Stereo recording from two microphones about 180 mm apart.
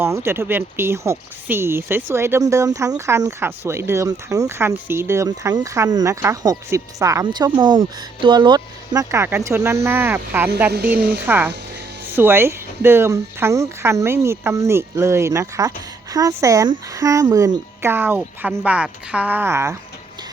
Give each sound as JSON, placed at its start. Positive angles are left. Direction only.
{"t": 0.0, "sound": "speech", "side_deg": -15}
{"t": 10.7, "sound": "a woman's voice", "side_deg": -60}
{"t": 11.3, "sound": "speech", "side_deg": -10}